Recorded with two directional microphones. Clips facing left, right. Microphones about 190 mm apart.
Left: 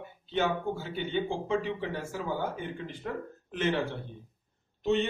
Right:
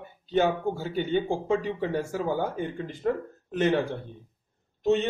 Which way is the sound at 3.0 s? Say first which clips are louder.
Right 11 dB; 45° right (ahead or behind).